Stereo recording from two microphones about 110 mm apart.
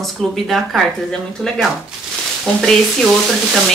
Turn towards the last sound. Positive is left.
turn(degrees=0)  # may be behind; listen again after turning